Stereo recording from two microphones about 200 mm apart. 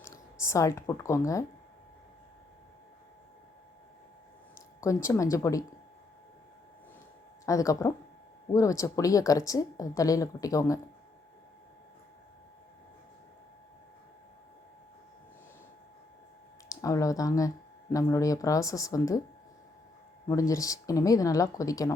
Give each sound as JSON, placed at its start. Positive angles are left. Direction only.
{"t": 0.0, "sound": "speech", "side_deg": 15}
{"t": 4.5, "sound": "speech", "side_deg": 15}
{"t": 7.4, "sound": "speech", "side_deg": 15}
{"t": 16.6, "sound": "speech", "side_deg": 15}
{"t": 20.5, "sound": "speech", "side_deg": 15}